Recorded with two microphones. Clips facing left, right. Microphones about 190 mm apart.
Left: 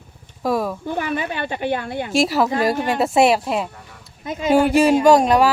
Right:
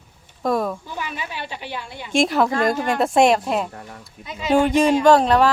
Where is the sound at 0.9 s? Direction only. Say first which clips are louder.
Left 8 dB; 55° left (ahead or behind).